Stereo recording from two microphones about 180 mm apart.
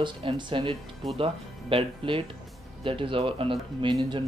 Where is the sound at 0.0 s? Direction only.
25° right (ahead or behind).